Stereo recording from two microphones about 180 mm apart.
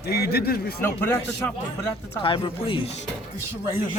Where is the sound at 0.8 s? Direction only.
10° left (ahead or behind).